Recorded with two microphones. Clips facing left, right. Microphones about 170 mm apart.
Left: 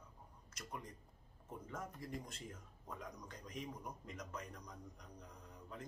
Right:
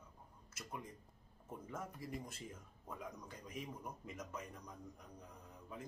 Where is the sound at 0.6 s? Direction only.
5° right (ahead or behind).